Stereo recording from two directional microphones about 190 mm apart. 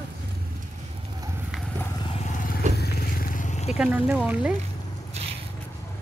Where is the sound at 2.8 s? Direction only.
45° left (ahead or behind).